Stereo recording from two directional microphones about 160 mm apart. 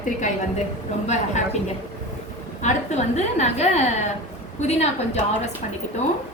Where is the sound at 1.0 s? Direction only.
45° left (ahead or behind).